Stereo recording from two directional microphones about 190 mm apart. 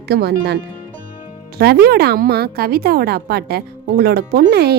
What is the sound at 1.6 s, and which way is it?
A woman's voice, 55° right (ahead or behind).